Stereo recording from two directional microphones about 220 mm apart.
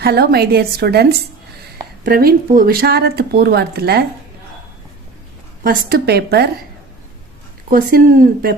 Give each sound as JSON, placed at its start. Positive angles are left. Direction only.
{"t": 0.0, "sound": "speech", "side_deg": -45}
{"t": 2.0, "sound": "speech", "side_deg": -40}
{"t": 5.6, "sound": "speech", "side_deg": -45}
{"t": 7.7, "sound": "speech", "side_deg": -40}